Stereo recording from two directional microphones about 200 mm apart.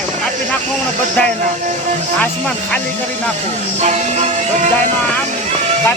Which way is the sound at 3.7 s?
35° right (ahead or behind).